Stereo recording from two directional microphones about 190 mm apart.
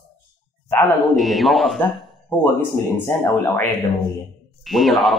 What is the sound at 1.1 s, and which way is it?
A man's voice, centre (ahead or behind).